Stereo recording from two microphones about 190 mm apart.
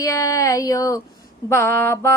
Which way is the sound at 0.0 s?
15° left (ahead or behind).